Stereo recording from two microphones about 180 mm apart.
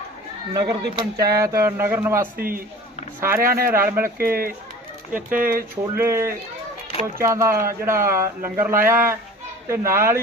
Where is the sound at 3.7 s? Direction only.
15° right (ahead or behind).